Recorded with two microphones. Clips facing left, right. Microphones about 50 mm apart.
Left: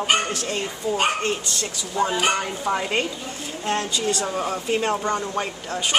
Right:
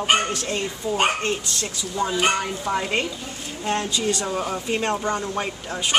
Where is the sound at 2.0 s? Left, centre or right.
Left.